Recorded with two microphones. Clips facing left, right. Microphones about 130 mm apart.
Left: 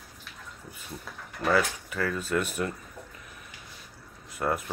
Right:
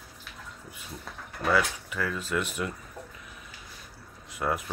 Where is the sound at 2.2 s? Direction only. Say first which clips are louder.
Left 2 dB; 45° left (ahead or behind).